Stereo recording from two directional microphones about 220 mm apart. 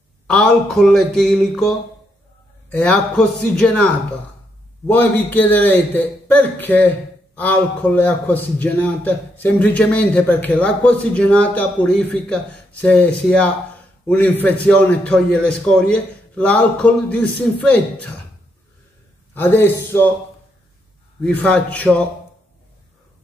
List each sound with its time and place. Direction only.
0.3 s a man's voice: centre (ahead or behind)
4.8 s a man's voice: 10° left (ahead or behind)
19.3 s a man's voice: 10° left (ahead or behind)
21.2 s a man's voice: 5° left (ahead or behind)